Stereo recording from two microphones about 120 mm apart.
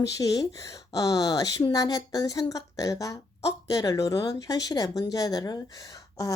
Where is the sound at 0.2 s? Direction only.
30° left (ahead or behind).